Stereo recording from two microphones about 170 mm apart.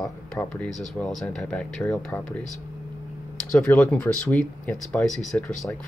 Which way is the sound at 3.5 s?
5° left (ahead or behind).